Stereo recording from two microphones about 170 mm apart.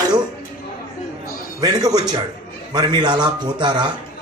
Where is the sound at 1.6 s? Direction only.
25° right (ahead or behind).